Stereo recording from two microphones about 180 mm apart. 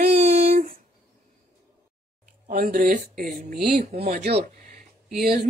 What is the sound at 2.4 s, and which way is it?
Speech, 50° right (ahead or behind).